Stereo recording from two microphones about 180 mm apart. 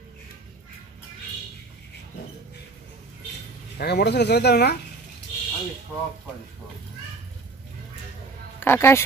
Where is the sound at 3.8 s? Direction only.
65° left (ahead or behind).